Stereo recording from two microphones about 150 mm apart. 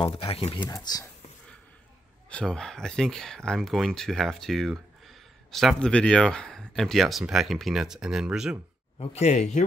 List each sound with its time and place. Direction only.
0.0 s speech: 40° left (ahead or behind)
0.7 s speech: 25° left (ahead or behind)
2.2 s speech: 5° left (ahead or behind)
9.0 s speech: 45° left (ahead or behind)